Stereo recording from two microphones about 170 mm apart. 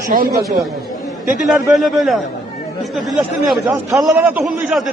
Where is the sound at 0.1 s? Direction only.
50° right (ahead or behind).